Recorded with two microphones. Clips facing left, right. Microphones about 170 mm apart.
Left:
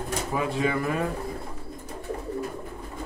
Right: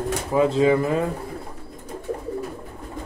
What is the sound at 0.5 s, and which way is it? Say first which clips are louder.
Speech: right 7 dB; 25° right (ahead or behind).